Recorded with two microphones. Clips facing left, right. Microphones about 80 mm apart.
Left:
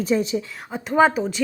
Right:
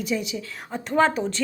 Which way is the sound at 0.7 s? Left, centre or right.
Centre.